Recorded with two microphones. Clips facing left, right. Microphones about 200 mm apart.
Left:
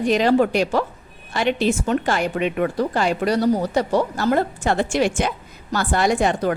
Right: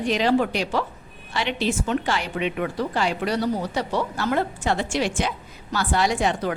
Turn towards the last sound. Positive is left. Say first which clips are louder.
# left 4 dB
turn(degrees=50)  # may be behind; listen again after turning